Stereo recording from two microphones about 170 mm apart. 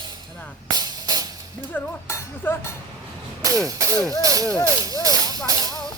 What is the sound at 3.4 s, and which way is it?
Speech, 20° right (ahead or behind).